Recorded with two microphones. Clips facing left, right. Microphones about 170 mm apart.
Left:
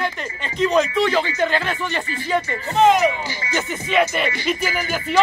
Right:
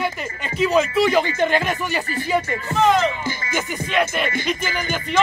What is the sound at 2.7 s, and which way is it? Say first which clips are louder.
Speech: left 2 dB; 20° left (ahead or behind).